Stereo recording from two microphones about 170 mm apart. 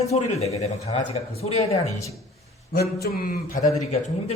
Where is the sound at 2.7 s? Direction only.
65° left (ahead or behind).